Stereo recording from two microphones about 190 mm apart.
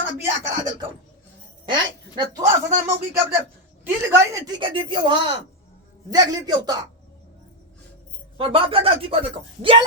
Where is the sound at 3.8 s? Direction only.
10° right (ahead or behind).